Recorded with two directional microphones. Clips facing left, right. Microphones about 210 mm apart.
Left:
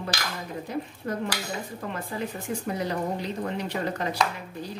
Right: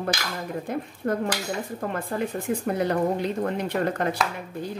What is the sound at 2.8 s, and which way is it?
A woman's voice, 55° right (ahead or behind).